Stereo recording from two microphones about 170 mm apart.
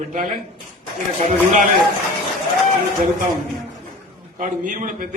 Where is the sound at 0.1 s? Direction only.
55° right (ahead or behind).